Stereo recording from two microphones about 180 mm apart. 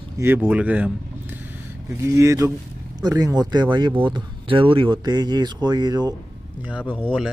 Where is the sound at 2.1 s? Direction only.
20° right (ahead or behind).